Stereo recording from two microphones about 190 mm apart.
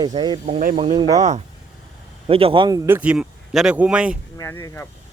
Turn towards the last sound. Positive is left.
turn(degrees=15)  # may be behind; listen again after turning